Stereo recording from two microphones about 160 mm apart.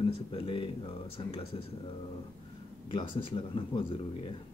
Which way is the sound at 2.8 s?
30° left (ahead or behind).